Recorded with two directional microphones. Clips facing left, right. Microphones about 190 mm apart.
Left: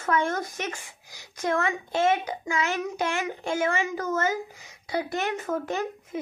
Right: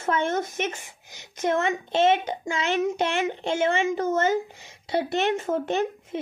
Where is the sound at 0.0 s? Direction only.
25° right (ahead or behind).